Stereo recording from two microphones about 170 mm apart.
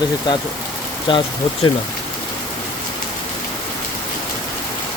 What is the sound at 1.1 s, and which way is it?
Speech, 30° left (ahead or behind).